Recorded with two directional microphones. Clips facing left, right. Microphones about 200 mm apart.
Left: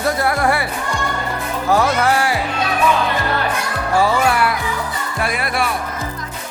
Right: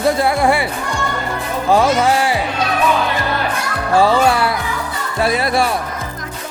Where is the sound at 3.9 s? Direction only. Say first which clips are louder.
Right 3 dB; 30° right (ahead or behind).